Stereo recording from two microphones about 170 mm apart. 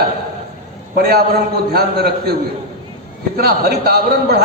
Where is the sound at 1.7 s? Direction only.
70° right (ahead or behind).